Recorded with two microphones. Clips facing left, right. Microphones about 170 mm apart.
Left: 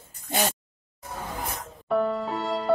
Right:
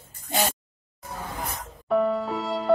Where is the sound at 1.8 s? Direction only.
Centre (ahead or behind).